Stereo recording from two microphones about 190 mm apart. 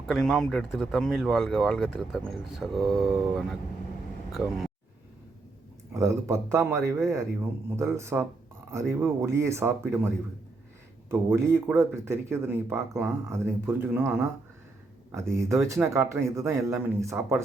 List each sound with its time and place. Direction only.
0.1 s speech: 5° left (ahead or behind)
4.3 s speech: centre (ahead or behind)
5.9 s speech: 15° right (ahead or behind)
11.3 s speech: 15° right (ahead or behind)